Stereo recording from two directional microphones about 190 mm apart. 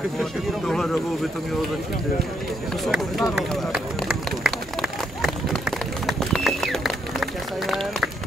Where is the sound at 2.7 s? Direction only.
Centre (ahead or behind).